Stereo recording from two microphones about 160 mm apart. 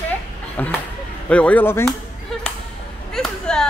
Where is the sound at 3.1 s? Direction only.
5° left (ahead or behind).